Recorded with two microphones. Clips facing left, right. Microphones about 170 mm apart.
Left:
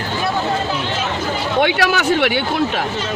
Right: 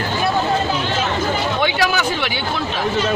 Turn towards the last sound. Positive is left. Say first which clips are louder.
# left 4 dB
turn(degrees=65)  # may be behind; listen again after turning